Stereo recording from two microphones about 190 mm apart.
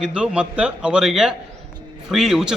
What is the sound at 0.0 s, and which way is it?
Speech, 5° right (ahead or behind).